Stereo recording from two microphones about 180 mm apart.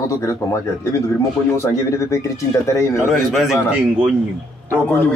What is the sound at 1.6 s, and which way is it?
Speech, 15° left (ahead or behind).